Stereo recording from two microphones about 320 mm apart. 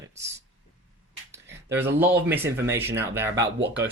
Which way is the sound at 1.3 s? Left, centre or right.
Centre.